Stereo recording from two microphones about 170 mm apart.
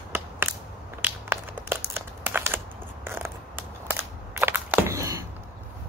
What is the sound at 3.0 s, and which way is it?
Crushing, 15° right (ahead or behind).